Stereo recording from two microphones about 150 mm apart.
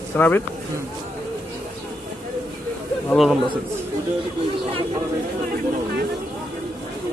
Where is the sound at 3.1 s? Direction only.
Centre (ahead or behind).